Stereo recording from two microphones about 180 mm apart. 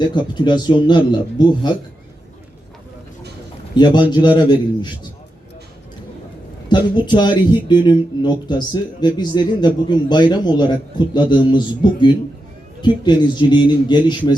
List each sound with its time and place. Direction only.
0.1 s speech: 25° left (ahead or behind)
3.8 s speech: 25° left (ahead or behind)
6.7 s speech: 25° left (ahead or behind)